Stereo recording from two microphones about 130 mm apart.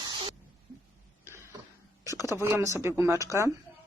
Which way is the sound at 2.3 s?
20° right (ahead or behind).